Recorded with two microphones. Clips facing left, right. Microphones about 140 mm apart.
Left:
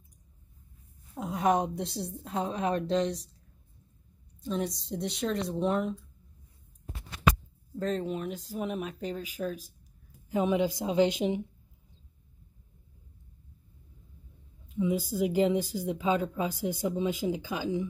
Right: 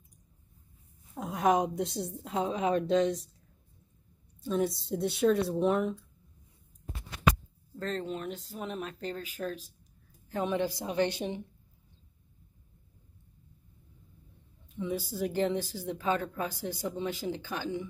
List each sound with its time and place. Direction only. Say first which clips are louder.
1.1 s a woman's voice: even; centre (ahead or behind)
4.4 s a woman's voice: right 3 dB; centre (ahead or behind)
7.7 s a woman's voice: left 4 dB; 10° left (ahead or behind)
14.8 s a woman's voice: left 5 dB; 10° left (ahead or behind)